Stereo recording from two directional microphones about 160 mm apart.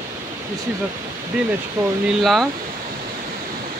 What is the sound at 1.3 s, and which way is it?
Speech, 5° right (ahead or behind).